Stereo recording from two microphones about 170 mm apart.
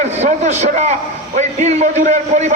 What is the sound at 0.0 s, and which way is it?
A man's voice, 45° right (ahead or behind).